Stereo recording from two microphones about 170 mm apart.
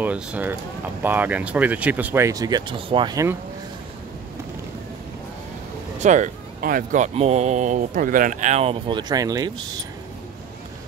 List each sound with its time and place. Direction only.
0.0 s speech: 10° right (ahead or behind)
5.9 s a man's voice: 45° right (ahead or behind); by 9.8 s 25° right (ahead or behind)